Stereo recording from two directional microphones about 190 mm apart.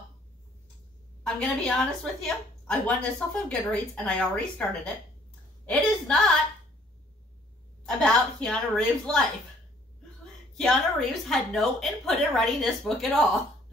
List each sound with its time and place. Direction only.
1.2 s a woman's voice: 5° left (ahead or behind)
7.8 s a woman's voice: 5° left (ahead or behind)
10.6 s a woman's voice: 5° left (ahead or behind)